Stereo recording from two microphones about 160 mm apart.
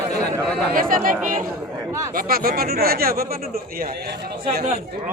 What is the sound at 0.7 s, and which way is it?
A man's voice, 60° right (ahead or behind).